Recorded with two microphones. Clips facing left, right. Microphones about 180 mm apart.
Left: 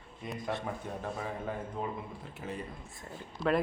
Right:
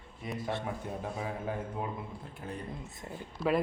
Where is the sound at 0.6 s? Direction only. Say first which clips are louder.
Even; 5° right (ahead or behind).